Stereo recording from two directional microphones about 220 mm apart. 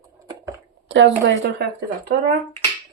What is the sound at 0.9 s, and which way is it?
Speech, 55° right (ahead or behind).